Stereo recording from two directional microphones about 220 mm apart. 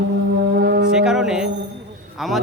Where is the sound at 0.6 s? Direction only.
45° right (ahead or behind).